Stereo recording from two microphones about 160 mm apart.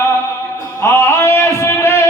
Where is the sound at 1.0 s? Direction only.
15° left (ahead or behind).